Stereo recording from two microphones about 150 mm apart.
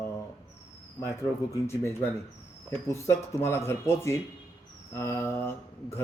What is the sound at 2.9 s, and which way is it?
Speech, 15° left (ahead or behind).